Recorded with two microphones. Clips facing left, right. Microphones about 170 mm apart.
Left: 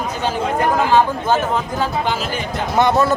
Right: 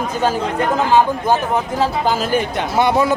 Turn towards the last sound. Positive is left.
turn(degrees=-10)  # may be behind; listen again after turning